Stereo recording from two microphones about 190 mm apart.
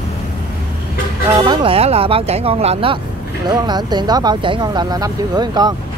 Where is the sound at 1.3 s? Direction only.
20° right (ahead or behind).